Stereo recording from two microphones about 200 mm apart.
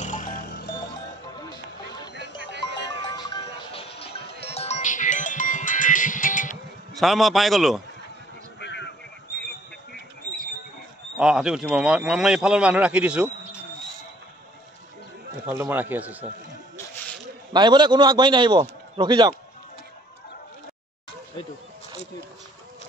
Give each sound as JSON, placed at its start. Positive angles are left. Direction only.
{"t": 0.0, "sound": "music", "side_deg": 40}
{"t": 3.2, "sound": "music", "side_deg": 25}
{"t": 6.9, "sound": "a man's voice", "side_deg": 0}
{"t": 8.5, "sound": "a sound", "side_deg": 60}
{"t": 11.1, "sound": "a man's voice", "side_deg": -5}
{"t": 15.4, "sound": "speech", "side_deg": -10}
{"t": 17.5, "sound": "a man's voice", "side_deg": -20}